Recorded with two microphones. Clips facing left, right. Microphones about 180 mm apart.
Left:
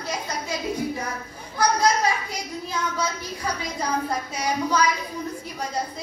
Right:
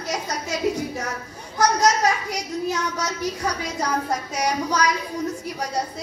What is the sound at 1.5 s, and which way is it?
A child's voice, 80° right.